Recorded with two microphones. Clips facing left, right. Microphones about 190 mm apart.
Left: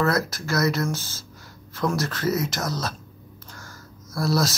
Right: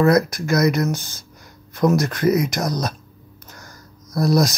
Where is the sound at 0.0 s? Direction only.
15° right (ahead or behind).